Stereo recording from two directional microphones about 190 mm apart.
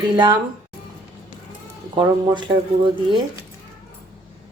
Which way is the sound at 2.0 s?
25° right (ahead or behind).